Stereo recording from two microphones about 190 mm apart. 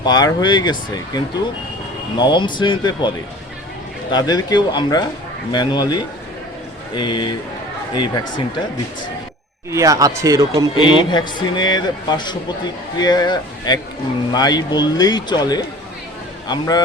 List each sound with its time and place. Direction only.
0.0 s a man's voice: 20° left (ahead or behind)
4.1 s a man's voice: 20° left (ahead or behind)
9.7 s speech: 15° right (ahead or behind)
10.8 s a man's voice: 25° left (ahead or behind)